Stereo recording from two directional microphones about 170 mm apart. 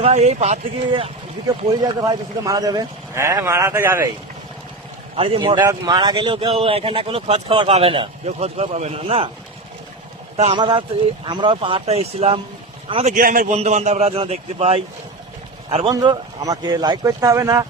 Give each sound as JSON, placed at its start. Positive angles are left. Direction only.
{"t": 0.0, "sound": "speech", "side_deg": -40}
{"t": 1.8, "sound": "a man's voice", "side_deg": -20}
{"t": 5.1, "sound": "speech", "side_deg": -30}
{"t": 10.3, "sound": "speech", "side_deg": -35}
{"t": 13.1, "sound": "a man's voice", "side_deg": -55}
{"t": 13.6, "sound": "speech", "side_deg": -40}